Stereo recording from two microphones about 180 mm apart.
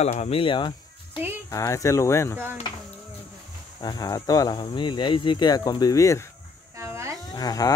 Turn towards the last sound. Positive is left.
turn(degrees=20)  # may be behind; listen again after turning